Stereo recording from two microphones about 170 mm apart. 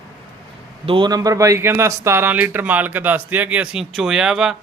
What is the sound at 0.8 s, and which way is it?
Speech, 30° right (ahead or behind).